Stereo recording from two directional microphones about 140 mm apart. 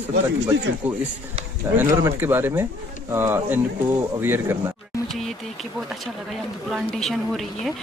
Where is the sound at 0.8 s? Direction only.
10° right (ahead or behind).